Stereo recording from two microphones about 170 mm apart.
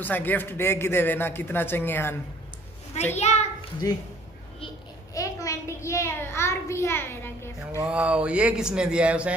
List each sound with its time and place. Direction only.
0.0 s a man's voice: 10° left (ahead or behind)
3.2 s a child's voice: 40° left (ahead or behind)
3.8 s speech: 20° left (ahead or behind)
5.1 s a sound: 20° left (ahead or behind)
7.8 s speech: 5° right (ahead or behind)